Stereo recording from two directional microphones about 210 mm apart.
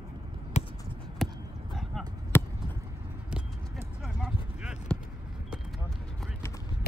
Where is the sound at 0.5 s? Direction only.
30° left (ahead or behind).